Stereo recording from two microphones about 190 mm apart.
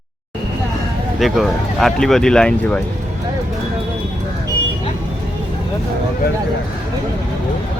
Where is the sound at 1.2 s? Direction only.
Centre (ahead or behind).